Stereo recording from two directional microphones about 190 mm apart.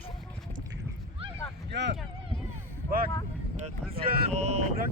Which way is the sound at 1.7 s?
65° right (ahead or behind).